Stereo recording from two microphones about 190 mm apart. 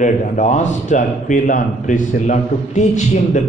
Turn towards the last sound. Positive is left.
turn(degrees=40)  # may be behind; listen again after turning